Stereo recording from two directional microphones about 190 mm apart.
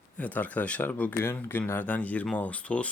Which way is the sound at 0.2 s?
10° left (ahead or behind).